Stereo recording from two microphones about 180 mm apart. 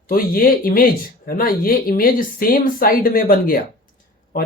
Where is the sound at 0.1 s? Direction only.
55° left (ahead or behind).